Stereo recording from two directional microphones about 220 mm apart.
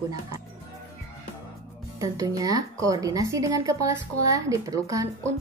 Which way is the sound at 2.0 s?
15° right (ahead or behind).